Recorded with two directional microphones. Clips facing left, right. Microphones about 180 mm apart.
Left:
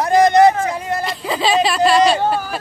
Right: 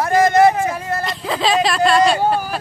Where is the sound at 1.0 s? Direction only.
Centre (ahead or behind).